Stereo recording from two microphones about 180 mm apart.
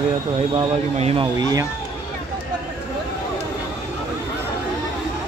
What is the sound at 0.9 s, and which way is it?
Speech, 35° right (ahead or behind).